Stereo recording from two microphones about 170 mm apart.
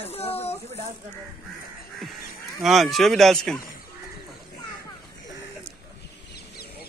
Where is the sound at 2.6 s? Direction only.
Centre (ahead or behind).